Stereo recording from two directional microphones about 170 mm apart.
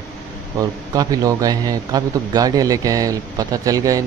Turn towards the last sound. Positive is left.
turn(degrees=-20)  # may be behind; listen again after turning